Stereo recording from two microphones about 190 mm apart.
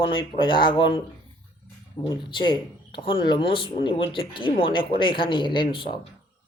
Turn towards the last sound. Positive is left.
turn(degrees=25)  # may be behind; listen again after turning